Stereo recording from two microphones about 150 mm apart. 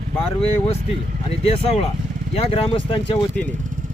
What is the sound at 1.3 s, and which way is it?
Speech, 40° left (ahead or behind).